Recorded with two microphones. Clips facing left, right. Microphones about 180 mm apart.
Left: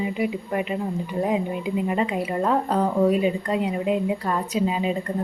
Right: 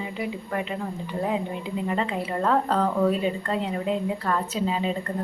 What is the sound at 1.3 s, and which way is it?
Speech, 15° left (ahead or behind).